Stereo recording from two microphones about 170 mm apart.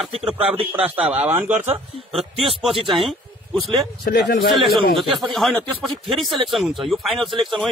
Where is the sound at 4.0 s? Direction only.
70° left (ahead or behind).